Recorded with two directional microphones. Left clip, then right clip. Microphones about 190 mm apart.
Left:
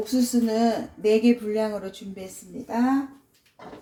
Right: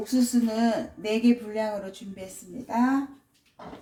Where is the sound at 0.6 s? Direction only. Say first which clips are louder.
Left 3 dB; 30° left (ahead or behind).